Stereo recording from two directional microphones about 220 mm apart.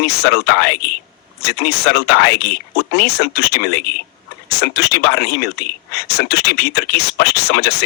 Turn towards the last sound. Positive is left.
turn(degrees=45)  # may be behind; listen again after turning